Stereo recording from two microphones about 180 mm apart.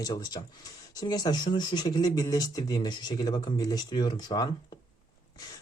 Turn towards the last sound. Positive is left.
turn(degrees=20)  # may be behind; listen again after turning